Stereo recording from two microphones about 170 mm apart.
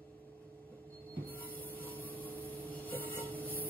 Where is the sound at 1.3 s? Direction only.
60° right (ahead or behind).